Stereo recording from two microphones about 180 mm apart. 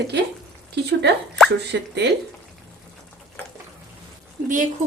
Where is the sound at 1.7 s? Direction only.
70° right (ahead or behind).